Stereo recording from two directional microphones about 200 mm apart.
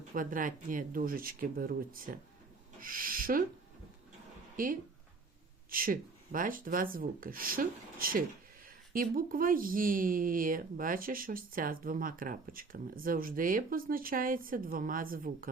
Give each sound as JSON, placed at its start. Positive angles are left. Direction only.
{"t": 0.1, "sound": "speech", "side_deg": -45}
{"t": 4.5, "sound": "speech", "side_deg": -45}